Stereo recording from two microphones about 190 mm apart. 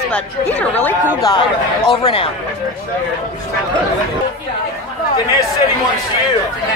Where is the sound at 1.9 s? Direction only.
30° left (ahead or behind).